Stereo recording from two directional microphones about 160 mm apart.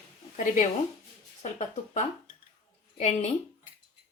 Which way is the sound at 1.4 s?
50° left (ahead or behind).